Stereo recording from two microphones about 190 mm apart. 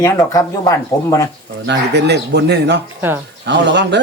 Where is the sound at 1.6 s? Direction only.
65° right (ahead or behind).